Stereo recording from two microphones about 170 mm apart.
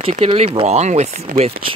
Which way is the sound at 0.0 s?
35° right (ahead or behind).